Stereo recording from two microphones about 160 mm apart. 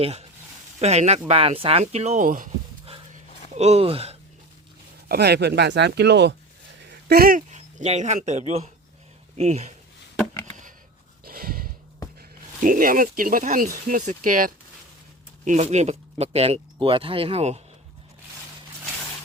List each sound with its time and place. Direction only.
0.0 s speech: 40° right (ahead or behind)
3.5 s speech: 40° right (ahead or behind)
5.0 s speech: 90° right
7.1 s speech: 65° right (ahead or behind); by 9.7 s 45° right (ahead or behind)
10.4 s a sound: 50° right (ahead or behind)
11.2 s a sound: 70° right (ahead or behind)
12.6 s speech: 60° right (ahead or behind)
15.4 s speech: 45° right (ahead or behind)